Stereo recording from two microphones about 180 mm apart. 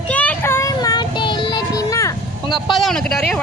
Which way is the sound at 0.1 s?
10° left (ahead or behind).